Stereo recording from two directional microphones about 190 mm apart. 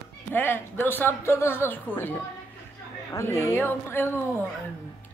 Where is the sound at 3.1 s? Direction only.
15° left (ahead or behind).